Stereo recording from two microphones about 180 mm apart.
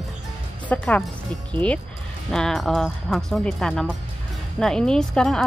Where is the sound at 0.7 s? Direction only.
10° left (ahead or behind).